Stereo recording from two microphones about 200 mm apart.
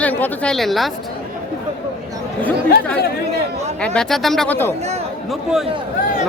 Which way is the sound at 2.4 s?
5° left (ahead or behind).